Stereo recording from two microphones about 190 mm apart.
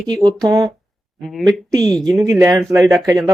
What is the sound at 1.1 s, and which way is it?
Speech, centre (ahead or behind).